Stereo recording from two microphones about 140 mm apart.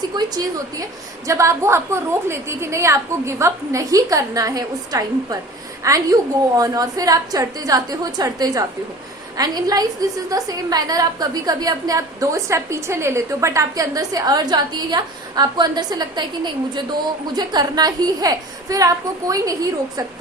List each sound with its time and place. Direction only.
0.1 s a woman's voice: 30° right (ahead or behind)